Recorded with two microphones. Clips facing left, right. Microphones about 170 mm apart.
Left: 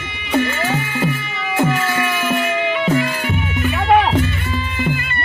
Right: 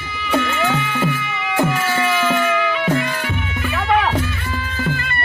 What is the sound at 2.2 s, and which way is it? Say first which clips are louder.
Music: right 1 dB; 15° left (ahead or behind).